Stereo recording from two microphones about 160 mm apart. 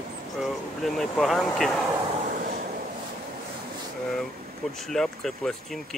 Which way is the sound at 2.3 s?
55° right (ahead or behind).